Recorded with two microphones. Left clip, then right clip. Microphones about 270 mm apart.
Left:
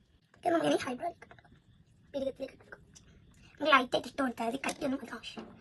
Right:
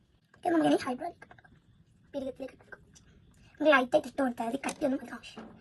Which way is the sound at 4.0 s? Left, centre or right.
Centre.